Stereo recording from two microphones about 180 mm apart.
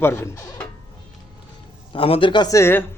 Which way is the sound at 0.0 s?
15° left (ahead or behind).